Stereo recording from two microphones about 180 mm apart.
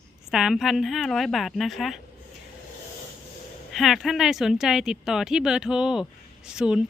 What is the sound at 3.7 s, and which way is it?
Speech, centre (ahead or behind).